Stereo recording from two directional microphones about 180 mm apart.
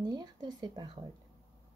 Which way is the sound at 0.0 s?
25° right (ahead or behind).